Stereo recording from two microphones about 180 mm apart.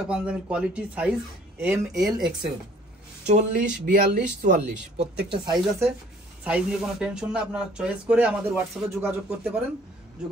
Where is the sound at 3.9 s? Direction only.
45° right (ahead or behind).